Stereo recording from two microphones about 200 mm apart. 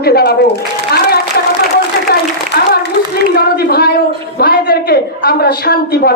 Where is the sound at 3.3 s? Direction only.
50° left (ahead or behind).